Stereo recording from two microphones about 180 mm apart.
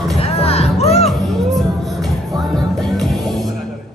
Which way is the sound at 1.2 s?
Centre (ahead or behind).